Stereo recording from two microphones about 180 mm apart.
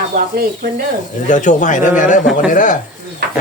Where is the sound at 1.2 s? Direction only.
45° left (ahead or behind).